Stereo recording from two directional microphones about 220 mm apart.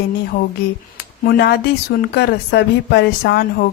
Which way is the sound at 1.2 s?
45° left (ahead or behind).